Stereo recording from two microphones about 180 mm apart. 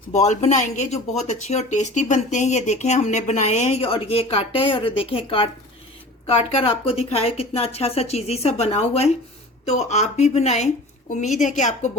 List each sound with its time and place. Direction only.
0.1 s a woman's voice: 40° left (ahead or behind)